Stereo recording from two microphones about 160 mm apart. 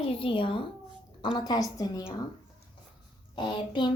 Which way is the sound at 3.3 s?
30° left (ahead or behind).